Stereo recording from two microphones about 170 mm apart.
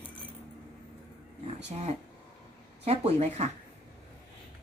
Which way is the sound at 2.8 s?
35° right (ahead or behind).